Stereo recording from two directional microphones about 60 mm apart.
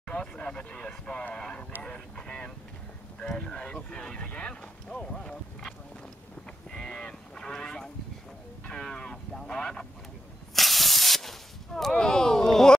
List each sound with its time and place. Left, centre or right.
0.1 s speech: centre
1.8 s vehicle: centre
3.2 s speech: centre
6.7 s goose: centre
8.6 s a sound: centre
10.5 s snake: centre
11.9 s a sound: centre